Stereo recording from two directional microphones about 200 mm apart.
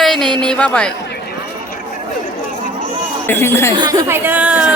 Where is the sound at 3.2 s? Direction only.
10° left (ahead or behind).